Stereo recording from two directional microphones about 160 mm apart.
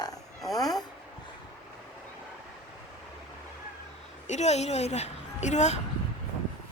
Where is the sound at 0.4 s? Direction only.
Centre (ahead or behind).